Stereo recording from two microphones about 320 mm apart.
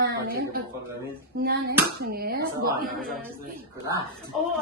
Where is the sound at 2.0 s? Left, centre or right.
Right.